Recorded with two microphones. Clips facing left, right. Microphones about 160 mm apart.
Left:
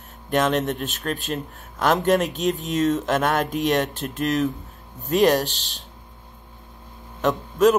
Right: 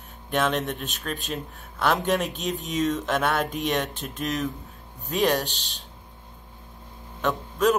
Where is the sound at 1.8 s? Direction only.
45° left (ahead or behind).